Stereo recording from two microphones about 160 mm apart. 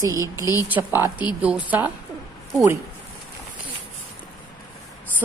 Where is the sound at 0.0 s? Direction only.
20° right (ahead or behind).